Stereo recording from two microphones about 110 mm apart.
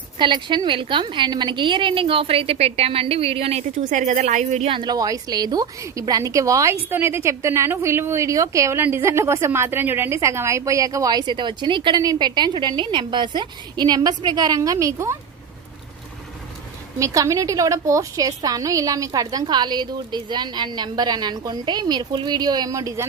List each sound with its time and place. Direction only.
0.2 s a woman's voice: 45° right (ahead or behind); by 4.7 s 90° right
4.7 s a woman's voice: 40° right (ahead or behind)
17.0 s a woman's voice: 30° right (ahead or behind)